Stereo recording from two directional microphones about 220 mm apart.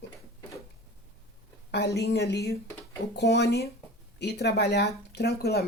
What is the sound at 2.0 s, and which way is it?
Speech, 50° left (ahead or behind).